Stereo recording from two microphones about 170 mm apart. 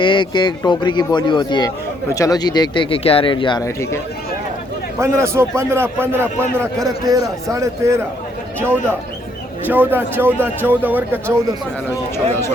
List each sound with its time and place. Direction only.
0.0 s speech: 30° left (ahead or behind)
4.9 s a man's voice: 15° right (ahead or behind)
12.1 s speech: 15° left (ahead or behind)